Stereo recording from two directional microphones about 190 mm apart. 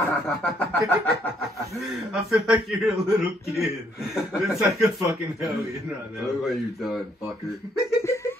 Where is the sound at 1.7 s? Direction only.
Centre (ahead or behind).